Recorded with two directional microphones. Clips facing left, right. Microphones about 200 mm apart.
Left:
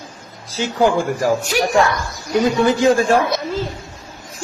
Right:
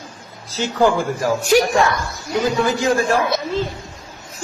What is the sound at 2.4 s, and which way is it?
Speech, 25° left (ahead or behind).